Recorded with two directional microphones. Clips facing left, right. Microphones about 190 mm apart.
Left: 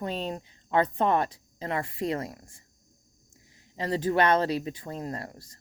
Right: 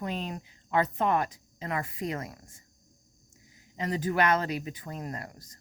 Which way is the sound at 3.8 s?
30° left (ahead or behind).